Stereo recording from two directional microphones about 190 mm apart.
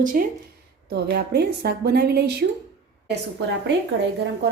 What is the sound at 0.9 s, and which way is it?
Cutlery, 55° right (ahead or behind).